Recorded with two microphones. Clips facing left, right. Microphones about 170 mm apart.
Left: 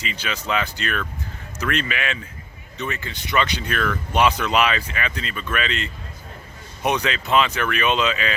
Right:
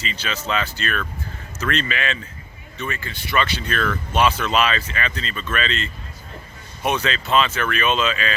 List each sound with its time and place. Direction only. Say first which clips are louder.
0.0 s speech: right 1 dB; 15° left (ahead or behind)